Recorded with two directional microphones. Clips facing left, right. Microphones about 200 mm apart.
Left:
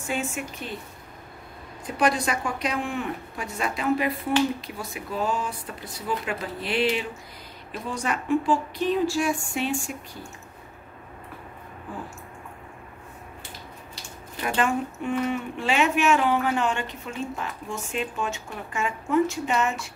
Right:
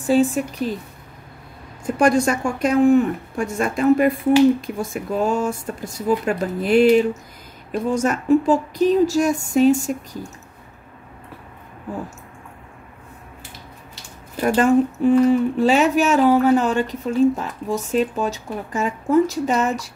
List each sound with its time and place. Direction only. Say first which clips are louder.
0.0 s speech: right 12 dB; 35° right (ahead or behind)
1.9 s speech: right 7 dB; 50° right (ahead or behind)
14.4 s speech: right 10 dB; 40° right (ahead or behind)